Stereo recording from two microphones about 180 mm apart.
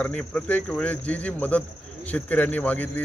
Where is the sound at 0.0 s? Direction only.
5° left (ahead or behind).